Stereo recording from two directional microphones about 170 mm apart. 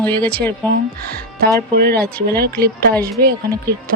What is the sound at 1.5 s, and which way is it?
A woman's voice, 65° right (ahead or behind).